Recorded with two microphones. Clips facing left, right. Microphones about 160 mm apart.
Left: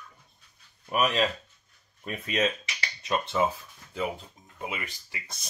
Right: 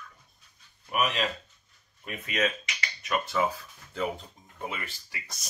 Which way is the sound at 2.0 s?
35° left (ahead or behind).